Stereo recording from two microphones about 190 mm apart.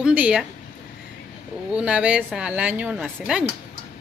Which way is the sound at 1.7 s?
5° right (ahead or behind).